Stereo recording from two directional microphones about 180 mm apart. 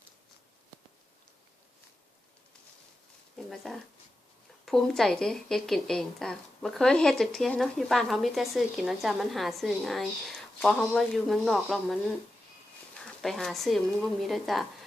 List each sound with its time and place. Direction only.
3.3 s a sound: centre (ahead or behind)
4.6 s speech: centre (ahead or behind)
13.1 s speech: centre (ahead or behind)